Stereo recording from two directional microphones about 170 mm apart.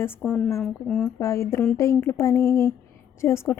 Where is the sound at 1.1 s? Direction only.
15° left (ahead or behind).